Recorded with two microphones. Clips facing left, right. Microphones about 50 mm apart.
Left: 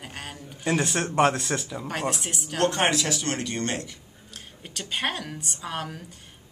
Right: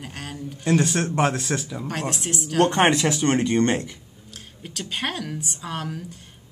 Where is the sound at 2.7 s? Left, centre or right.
Right.